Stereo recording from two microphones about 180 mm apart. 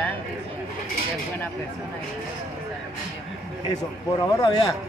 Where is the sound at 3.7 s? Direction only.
20° left (ahead or behind).